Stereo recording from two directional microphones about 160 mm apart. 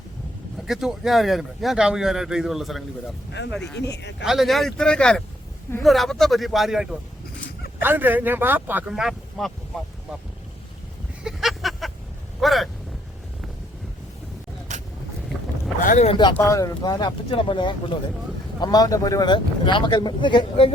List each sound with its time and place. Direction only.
0.7 s speech: centre (ahead or behind)
3.8 s speech: 90° left
4.2 s speech: centre (ahead or behind)
7.8 s a man's voice: 10° right (ahead or behind)
11.2 s a sound: centre (ahead or behind)
14.7 s vehicle: 45° right (ahead or behind)
15.3 s boat: 5° left (ahead or behind)
15.8 s speech: 55° left (ahead or behind)
16.0 s speech: 30° left (ahead or behind)
16.3 s speech: 20° left (ahead or behind)